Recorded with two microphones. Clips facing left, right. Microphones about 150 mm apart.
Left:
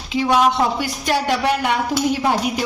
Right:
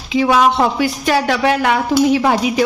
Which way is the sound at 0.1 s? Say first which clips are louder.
Right 3 dB; 90° right.